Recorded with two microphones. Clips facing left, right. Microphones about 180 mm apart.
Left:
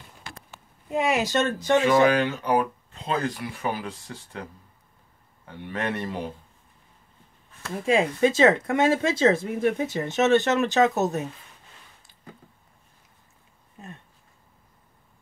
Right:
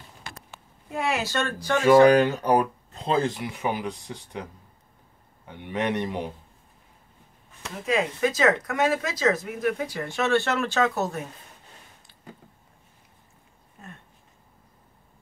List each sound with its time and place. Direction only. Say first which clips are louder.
0.9 s speech: left 4 dB; 20° left (ahead or behind)
1.8 s speech: right 5 dB; 40° right (ahead or behind); by 6.3 s 15° right (ahead or behind)
7.8 s speech: left 3 dB; 25° left (ahead or behind)
13.8 s a sound: left 3 dB; 20° left (ahead or behind)